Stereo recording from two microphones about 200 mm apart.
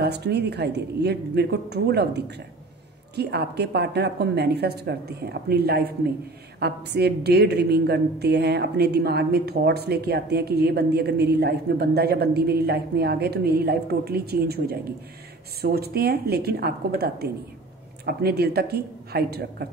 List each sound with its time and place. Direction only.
0.0 s a woman's voice: 55° right (ahead or behind)